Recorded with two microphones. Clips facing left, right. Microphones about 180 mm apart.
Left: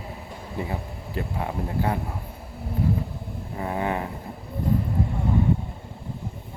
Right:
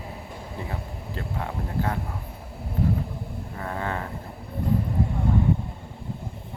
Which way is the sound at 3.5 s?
15° left (ahead or behind).